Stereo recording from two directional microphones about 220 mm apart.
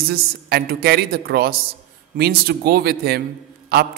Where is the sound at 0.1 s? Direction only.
45° right (ahead or behind).